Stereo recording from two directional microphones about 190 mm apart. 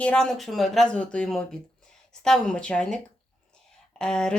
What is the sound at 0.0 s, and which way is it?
Speech, 5° left (ahead or behind).